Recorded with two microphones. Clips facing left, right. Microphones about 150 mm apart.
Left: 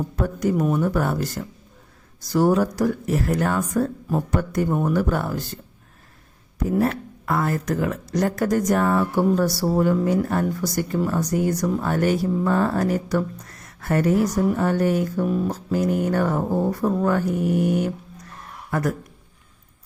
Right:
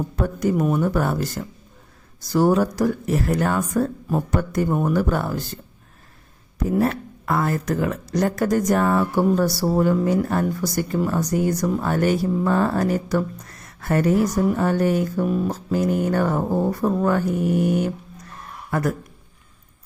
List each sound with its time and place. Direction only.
0.2 s speech: 25° right (ahead or behind)
0.5 s speech: 15° right (ahead or behind)
0.8 s speech: 30° right (ahead or behind)
4.7 s speech: 20° right (ahead or behind)
4.9 s speech: 35° right (ahead or behind)
6.7 s speech: 30° right (ahead or behind)